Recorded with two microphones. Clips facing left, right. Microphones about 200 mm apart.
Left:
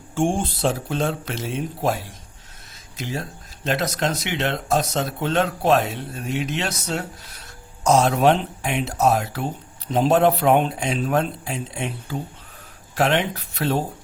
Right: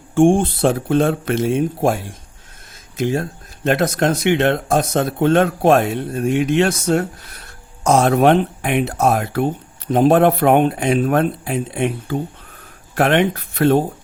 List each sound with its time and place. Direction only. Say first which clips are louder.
0.1 s speech: right 9 dB; 55° right (ahead or behind)